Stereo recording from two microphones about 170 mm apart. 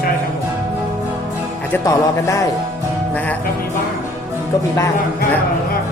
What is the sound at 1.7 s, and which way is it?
Music, 20° left (ahead or behind).